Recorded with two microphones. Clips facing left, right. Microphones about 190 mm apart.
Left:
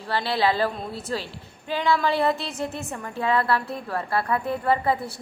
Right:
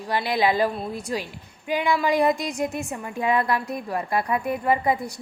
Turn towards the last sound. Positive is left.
turn(degrees=-15)  # may be behind; listen again after turning